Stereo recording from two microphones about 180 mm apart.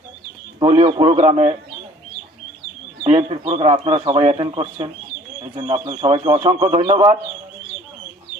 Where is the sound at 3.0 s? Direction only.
35° right (ahead or behind).